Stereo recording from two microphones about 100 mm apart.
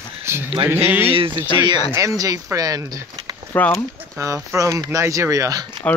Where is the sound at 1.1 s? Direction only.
60° right (ahead or behind).